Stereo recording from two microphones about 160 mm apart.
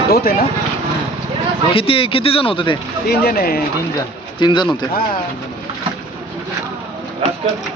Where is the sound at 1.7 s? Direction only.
35° left (ahead or behind).